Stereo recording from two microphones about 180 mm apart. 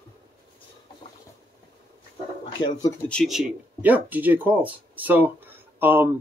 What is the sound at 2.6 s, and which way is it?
Speech, 30° left (ahead or behind).